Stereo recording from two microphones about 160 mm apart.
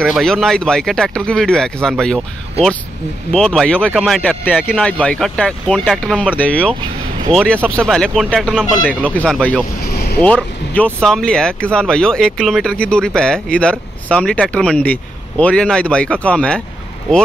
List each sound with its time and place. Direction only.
0.0 s speech: 5° left (ahead or behind)
3.3 s speech: 5° left (ahead or behind)
9.8 s vehicle: 75° left (ahead or behind)
10.2 s speech: 10° left (ahead or behind)